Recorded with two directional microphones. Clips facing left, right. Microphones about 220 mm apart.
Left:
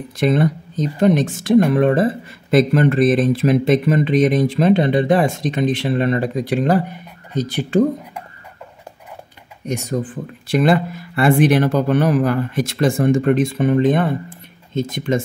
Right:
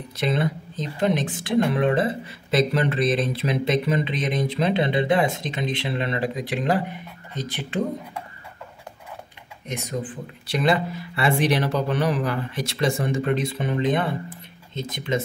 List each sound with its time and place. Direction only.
0.2 s speech: 45° left (ahead or behind)
9.7 s speech: 45° left (ahead or behind)